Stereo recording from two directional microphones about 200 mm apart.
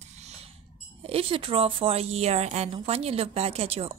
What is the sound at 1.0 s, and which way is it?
A woman's voice, 30° right (ahead or behind).